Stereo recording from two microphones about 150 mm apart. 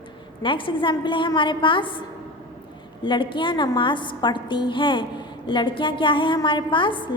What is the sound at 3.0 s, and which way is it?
A woman's voice, 30° left (ahead or behind).